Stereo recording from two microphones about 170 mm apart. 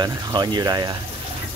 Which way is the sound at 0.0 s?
25° right (ahead or behind).